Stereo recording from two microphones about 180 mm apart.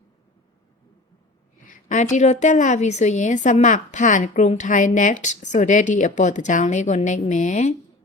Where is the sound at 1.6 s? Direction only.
45° left (ahead or behind).